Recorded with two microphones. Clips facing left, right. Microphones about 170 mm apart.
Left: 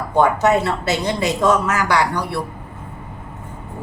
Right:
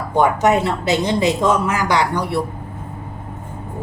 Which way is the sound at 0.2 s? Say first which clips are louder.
Even; 15° right (ahead or behind).